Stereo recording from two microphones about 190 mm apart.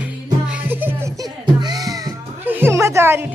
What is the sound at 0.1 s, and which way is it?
Music, 5° right (ahead or behind).